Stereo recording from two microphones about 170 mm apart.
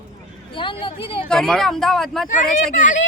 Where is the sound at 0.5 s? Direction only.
30° left (ahead or behind).